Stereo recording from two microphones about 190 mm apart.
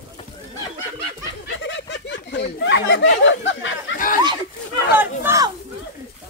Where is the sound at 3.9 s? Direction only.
45° left (ahead or behind).